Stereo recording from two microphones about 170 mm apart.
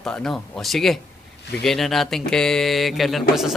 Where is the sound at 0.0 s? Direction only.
5° left (ahead or behind).